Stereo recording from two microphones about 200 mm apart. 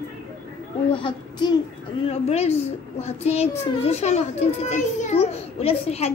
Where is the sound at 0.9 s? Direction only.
25° left (ahead or behind).